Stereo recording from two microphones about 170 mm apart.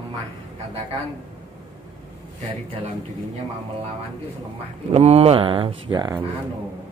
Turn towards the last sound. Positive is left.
turn(degrees=-25)  # may be behind; listen again after turning